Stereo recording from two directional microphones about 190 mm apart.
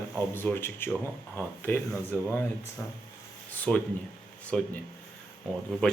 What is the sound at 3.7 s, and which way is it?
Speech, 5° left (ahead or behind).